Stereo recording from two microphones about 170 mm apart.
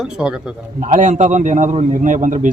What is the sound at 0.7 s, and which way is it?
A man's voice, 45° right (ahead or behind).